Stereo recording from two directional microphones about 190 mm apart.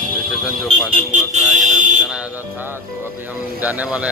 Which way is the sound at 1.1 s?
40° right (ahead or behind).